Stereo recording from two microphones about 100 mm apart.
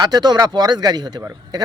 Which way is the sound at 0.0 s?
40° right (ahead or behind).